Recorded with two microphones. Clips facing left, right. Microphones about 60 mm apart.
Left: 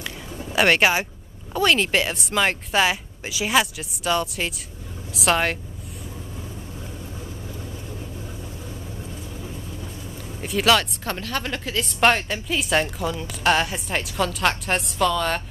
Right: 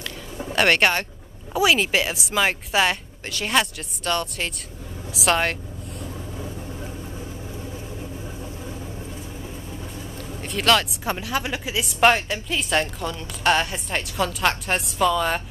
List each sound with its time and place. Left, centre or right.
0.5 s a woman's voice: centre
10.4 s speech: centre
11.1 s a woman's voice: centre